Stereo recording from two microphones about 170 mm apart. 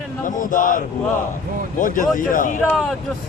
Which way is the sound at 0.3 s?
50° left (ahead or behind).